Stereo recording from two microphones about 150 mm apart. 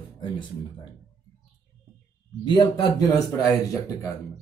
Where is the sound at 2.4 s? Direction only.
30° left (ahead or behind).